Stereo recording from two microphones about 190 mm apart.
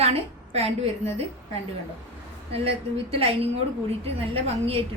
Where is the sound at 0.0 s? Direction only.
35° right (ahead or behind).